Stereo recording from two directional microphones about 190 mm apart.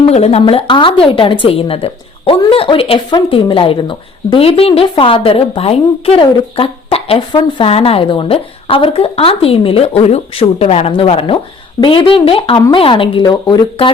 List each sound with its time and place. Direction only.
0.0 s a woman's voice: 35° left (ahead or behind)